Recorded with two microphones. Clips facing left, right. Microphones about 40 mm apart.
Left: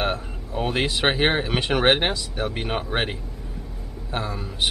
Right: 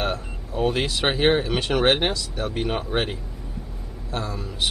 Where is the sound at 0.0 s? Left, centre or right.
Centre.